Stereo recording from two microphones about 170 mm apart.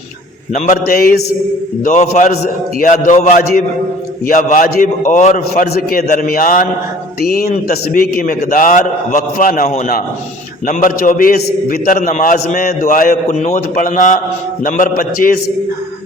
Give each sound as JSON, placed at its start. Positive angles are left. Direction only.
{"t": 0.5, "sound": "a man's voice", "side_deg": 50}
{"t": 1.8, "sound": "a man's voice", "side_deg": 45}
{"t": 5.7, "sound": "a man's voice", "side_deg": 60}
{"t": 7.2, "sound": "a man's voice", "side_deg": 65}